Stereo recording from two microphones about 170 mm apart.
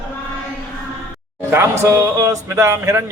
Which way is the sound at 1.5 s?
15° right (ahead or behind).